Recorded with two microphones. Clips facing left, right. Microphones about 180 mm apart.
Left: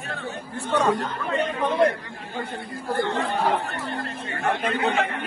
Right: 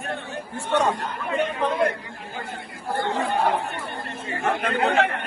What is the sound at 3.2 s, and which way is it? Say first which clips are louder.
Speech: right 1 dB; 65° left (ahead or behind).